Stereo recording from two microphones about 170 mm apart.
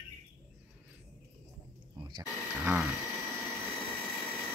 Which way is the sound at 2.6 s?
10° right (ahead or behind).